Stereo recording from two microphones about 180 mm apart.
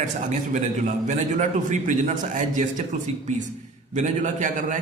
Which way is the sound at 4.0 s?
45° right (ahead or behind).